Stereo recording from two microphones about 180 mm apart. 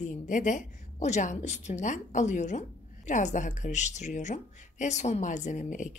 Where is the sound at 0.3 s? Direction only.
45° left (ahead or behind).